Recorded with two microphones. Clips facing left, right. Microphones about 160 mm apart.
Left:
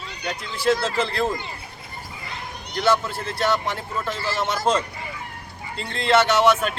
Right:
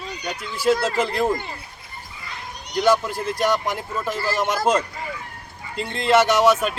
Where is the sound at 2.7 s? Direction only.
15° right (ahead or behind).